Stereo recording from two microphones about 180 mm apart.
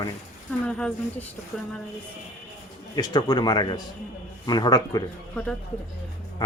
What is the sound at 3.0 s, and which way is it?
Speech, 25° left (ahead or behind).